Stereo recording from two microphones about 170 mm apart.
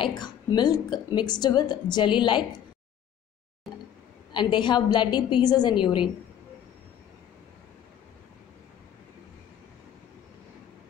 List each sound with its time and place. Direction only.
0.0 s a woman's voice: 25° left (ahead or behind)
4.3 s a woman's voice: 30° left (ahead or behind)